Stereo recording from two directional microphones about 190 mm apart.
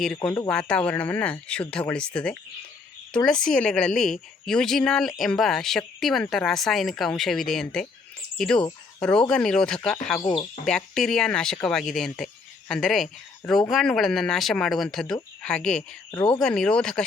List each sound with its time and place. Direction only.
0.3 s speech: 5° left (ahead or behind)
10.2 s speech: 25° left (ahead or behind)
10.7 s speech: 5° left (ahead or behind)
16.1 s speech: 25° left (ahead or behind)
16.4 s speech: 5° left (ahead or behind)